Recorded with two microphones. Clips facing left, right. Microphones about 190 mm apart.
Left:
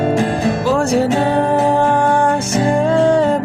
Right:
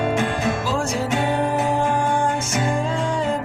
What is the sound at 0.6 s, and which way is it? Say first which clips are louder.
Music: left 9 dB; 65° left (ahead or behind).